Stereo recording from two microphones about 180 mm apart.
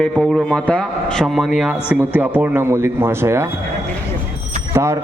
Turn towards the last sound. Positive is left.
turn(degrees=-15)  # may be behind; listen again after turning